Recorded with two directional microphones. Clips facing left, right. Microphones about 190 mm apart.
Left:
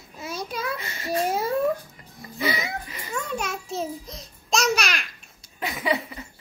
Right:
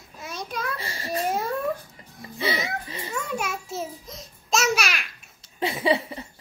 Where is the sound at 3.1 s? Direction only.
5° right (ahead or behind).